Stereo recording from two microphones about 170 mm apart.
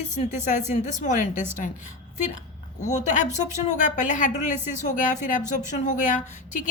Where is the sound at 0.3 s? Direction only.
45° left (ahead or behind).